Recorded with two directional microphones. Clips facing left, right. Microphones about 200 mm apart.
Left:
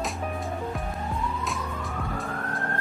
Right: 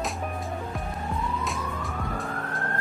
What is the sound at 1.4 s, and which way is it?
Police car, centre (ahead or behind).